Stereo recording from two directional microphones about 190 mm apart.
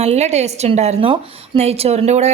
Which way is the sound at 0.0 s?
35° right (ahead or behind).